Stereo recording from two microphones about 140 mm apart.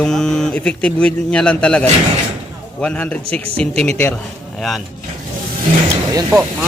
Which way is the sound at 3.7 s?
50° right (ahead or behind).